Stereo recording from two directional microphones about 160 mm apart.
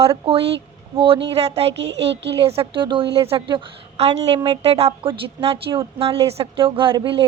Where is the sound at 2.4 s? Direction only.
35° right (ahead or behind).